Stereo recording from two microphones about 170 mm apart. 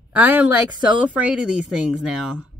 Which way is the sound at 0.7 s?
25° right (ahead or behind).